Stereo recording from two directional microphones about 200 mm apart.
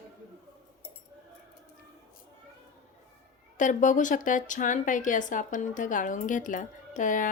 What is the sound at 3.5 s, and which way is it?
Speech, 40° left (ahead or behind).